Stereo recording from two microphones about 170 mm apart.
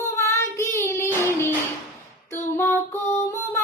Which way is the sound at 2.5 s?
15° left (ahead or behind).